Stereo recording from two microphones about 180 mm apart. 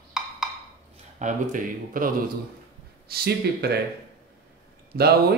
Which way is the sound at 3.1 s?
60° right (ahead or behind).